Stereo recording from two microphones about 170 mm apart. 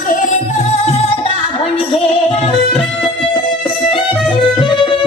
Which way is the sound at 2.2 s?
35° left (ahead or behind).